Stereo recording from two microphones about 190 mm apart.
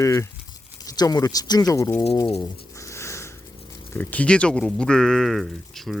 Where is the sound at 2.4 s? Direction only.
15° left (ahead or behind).